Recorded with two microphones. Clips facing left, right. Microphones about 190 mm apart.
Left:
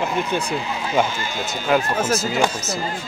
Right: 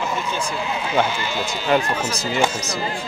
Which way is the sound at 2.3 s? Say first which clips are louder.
Even; 5° left (ahead or behind).